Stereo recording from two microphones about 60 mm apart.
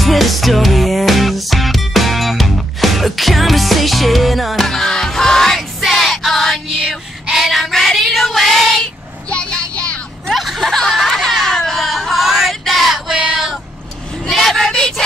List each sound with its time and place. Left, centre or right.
0.0 s music: centre
5.6 s music: centre
6.8 s child singing: centre
9.3 s child singing: centre
10.2 s a sound: centre
13.1 s female singing: centre
14.3 s child singing: centre